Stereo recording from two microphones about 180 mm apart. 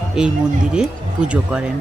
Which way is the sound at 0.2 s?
5° right (ahead or behind).